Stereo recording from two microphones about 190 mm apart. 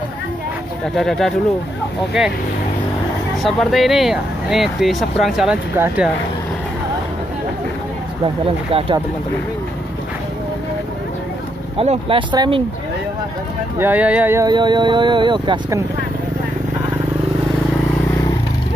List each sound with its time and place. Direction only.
0.9 s speech: centre (ahead or behind)
3.4 s speech: centre (ahead or behind)
8.7 s speech: 30° right (ahead or behind)
11.8 s speech: 30° right (ahead or behind)
13.7 s speech: 10° right (ahead or behind); by 15.8 s 25° right (ahead or behind)